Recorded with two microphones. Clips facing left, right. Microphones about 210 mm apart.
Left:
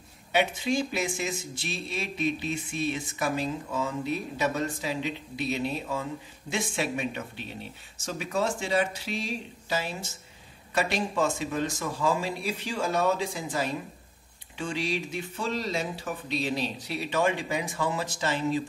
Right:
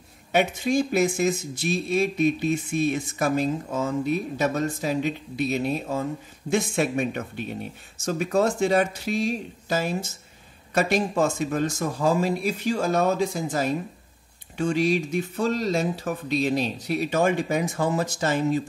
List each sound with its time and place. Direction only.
0.3 s speech: 45° right (ahead or behind)